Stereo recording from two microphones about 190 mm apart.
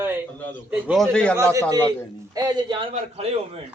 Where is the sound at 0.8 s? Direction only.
Centre (ahead or behind).